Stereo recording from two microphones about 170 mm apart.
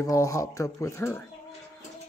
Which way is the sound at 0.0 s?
20° left (ahead or behind).